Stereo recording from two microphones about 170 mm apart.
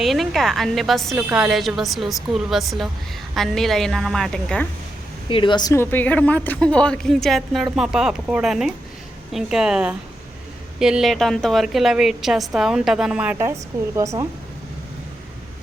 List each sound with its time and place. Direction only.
0.0 s a woman's voice: centre (ahead or behind)
5.3 s a woman's voice: 30° left (ahead or behind); by 13.5 s 5° right (ahead or behind)
13.9 s speech: 20° right (ahead or behind)